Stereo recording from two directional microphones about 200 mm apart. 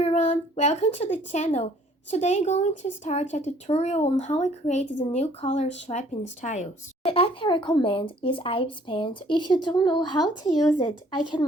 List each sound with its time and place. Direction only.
0.0 s speech: 35° left (ahead or behind)